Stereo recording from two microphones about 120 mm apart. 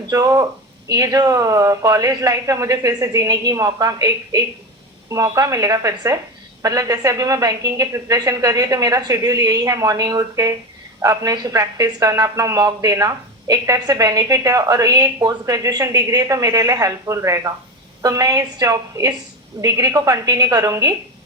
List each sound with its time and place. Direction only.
0.1 s speech: 30° right (ahead or behind)